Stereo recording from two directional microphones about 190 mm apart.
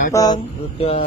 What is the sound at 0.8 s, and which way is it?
Speech, 30° left (ahead or behind).